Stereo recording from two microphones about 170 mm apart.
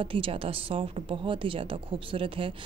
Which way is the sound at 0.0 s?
30° right (ahead or behind).